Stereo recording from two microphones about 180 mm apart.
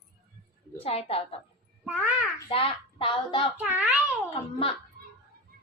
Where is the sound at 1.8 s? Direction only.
5° right (ahead or behind).